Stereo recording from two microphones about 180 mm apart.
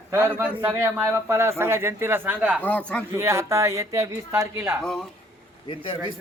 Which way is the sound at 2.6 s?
10° left (ahead or behind).